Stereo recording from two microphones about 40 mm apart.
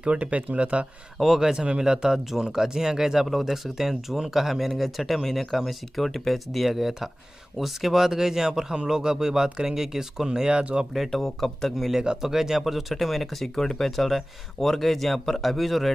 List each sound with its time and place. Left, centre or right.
0.2 s speech: right
1.1 s speech: centre
1.5 s speech: right
10.6 s speech: right
11.1 s speech: centre